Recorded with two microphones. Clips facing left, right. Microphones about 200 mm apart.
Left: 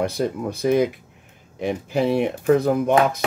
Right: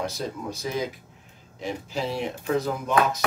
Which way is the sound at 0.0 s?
60° left (ahead or behind).